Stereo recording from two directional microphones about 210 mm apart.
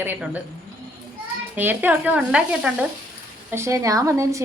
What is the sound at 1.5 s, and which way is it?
A woman's voice, 10° right (ahead or behind).